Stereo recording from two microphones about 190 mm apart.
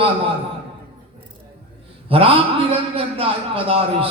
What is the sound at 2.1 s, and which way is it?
A man's voice, 30° right (ahead or behind).